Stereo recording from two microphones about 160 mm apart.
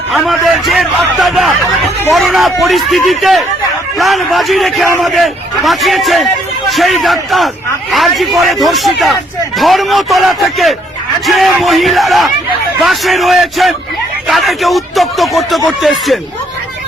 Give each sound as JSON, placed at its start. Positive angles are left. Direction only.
{"t": 0.1, "sound": "a man's voice", "side_deg": 0}